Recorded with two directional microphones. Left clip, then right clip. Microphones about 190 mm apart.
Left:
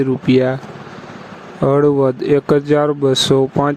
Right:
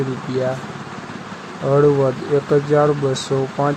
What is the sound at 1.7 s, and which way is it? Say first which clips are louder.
Speech: left 1 dB; 55° left (ahead or behind).